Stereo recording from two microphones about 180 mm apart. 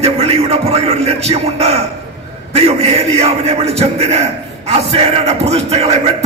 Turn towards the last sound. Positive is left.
turn(degrees=-35)  # may be behind; listen again after turning